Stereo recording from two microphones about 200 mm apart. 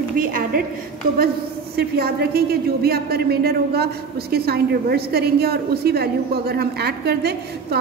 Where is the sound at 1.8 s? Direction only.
50° right (ahead or behind).